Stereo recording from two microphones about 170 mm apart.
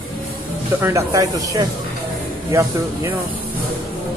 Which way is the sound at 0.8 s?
15° right (ahead or behind).